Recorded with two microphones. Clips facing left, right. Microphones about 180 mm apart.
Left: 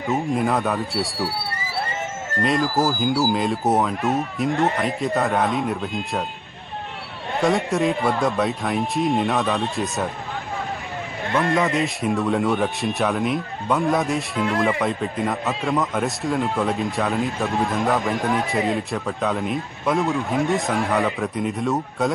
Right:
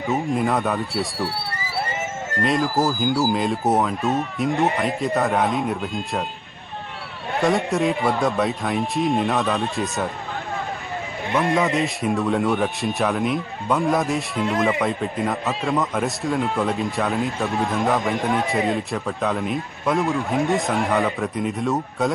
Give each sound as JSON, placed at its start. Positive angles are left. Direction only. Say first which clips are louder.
{"t": 0.1, "sound": "speech", "louder": "even", "side_deg": 0}
{"t": 2.4, "sound": "speech", "louder": "even", "side_deg": 0}
{"t": 7.4, "sound": "speech", "louder": "even", "side_deg": 0}
{"t": 11.3, "sound": "a man's voice", "louder": "even", "side_deg": -15}
{"t": 11.5, "sound": "speech", "louder": "even", "side_deg": 0}